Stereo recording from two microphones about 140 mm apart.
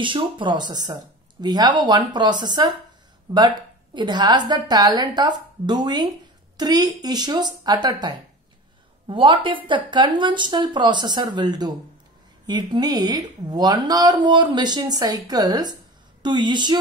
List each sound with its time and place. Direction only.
0.0 s a woman's voice: 35° right (ahead or behind)